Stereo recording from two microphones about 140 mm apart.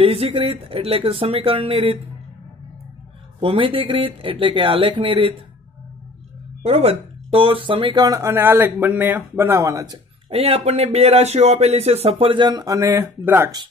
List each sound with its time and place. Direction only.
0.0 s speech: 45° right (ahead or behind)
3.3 s speech: 40° right (ahead or behind)
6.6 s speech: 50° right (ahead or behind); by 9.9 s 25° right (ahead or behind)
10.3 s speech: 45° right (ahead or behind); by 13.5 s 15° right (ahead or behind)